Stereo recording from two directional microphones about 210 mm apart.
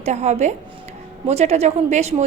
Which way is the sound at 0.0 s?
30° right (ahead or behind).